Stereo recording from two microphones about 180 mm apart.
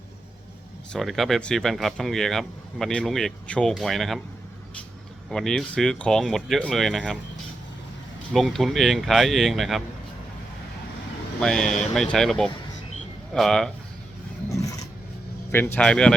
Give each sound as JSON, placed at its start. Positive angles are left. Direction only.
{"t": 0.9, "sound": "speech", "side_deg": 0}
{"t": 5.3, "sound": "speech", "side_deg": 5}
{"t": 8.3, "sound": "speech", "side_deg": 0}
{"t": 11.3, "sound": "speech", "side_deg": 5}
{"t": 14.5, "sound": "vehicle", "side_deg": 20}
{"t": 15.5, "sound": "speech", "side_deg": 10}